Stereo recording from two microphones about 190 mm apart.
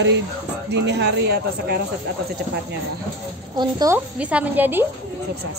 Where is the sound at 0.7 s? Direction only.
65° right (ahead or behind).